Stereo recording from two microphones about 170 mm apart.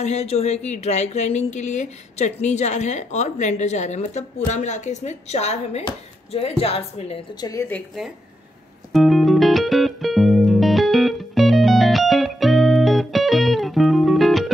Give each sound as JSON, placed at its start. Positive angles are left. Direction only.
{"t": 0.0, "sound": "speech", "side_deg": 40}
{"t": 7.3, "sound": "a woman's voice", "side_deg": 20}
{"t": 7.7, "sound": "a woman's voice", "side_deg": 0}
{"t": 8.9, "sound": "music", "side_deg": 0}